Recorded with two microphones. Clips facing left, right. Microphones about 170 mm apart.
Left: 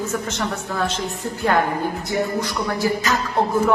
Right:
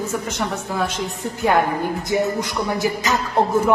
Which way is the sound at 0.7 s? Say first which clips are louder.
Right 1 dB; 10° right (ahead or behind).